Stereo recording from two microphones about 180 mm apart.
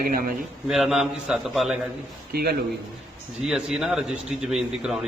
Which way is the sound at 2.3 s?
60° right (ahead or behind).